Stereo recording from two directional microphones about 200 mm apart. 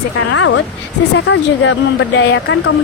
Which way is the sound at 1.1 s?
65° left (ahead or behind).